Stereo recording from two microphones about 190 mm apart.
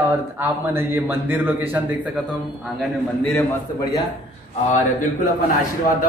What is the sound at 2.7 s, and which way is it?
Speech, centre (ahead or behind).